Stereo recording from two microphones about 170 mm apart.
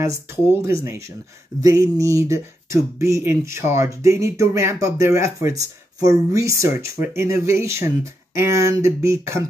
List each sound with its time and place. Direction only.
0.0 s speech: 15° right (ahead or behind)